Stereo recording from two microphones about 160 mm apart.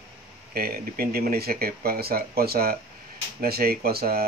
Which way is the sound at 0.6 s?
70° right (ahead or behind).